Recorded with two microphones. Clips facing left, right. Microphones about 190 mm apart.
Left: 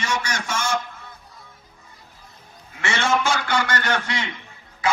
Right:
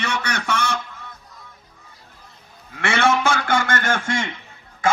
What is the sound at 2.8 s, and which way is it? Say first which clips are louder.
A man's voice: right 3 dB; 55° right (ahead or behind).